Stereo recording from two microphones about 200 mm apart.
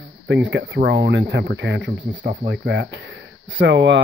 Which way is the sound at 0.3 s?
65° right (ahead or behind).